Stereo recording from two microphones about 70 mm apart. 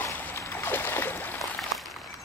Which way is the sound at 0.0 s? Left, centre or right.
Left.